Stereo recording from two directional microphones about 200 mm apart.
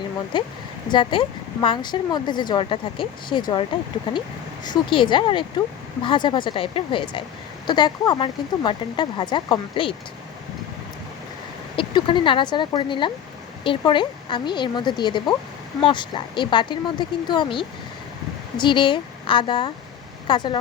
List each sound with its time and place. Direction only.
0.3 s a woman's voice: 25° left (ahead or behind)
11.8 s a woman's voice: 25° left (ahead or behind)